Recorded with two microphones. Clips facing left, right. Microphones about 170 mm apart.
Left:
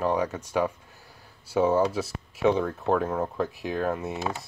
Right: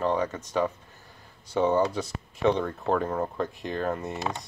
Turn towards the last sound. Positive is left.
turn(degrees=5)  # may be behind; listen again after turning